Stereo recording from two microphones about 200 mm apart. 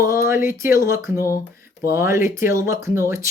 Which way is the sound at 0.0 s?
15° right (ahead or behind).